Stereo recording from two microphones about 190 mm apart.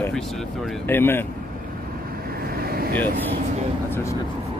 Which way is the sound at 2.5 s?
55° right (ahead or behind).